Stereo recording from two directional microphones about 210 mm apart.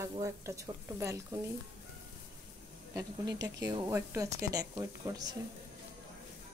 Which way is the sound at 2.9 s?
20° right (ahead or behind).